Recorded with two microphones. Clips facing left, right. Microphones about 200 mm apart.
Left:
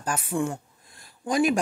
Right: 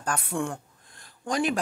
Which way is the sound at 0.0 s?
5° left (ahead or behind).